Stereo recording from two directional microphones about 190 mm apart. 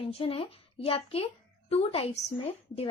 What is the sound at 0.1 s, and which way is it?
A woman's voice, 30° left (ahead or behind).